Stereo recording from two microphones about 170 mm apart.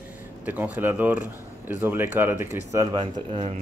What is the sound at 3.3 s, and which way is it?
Speech, 35° right (ahead or behind).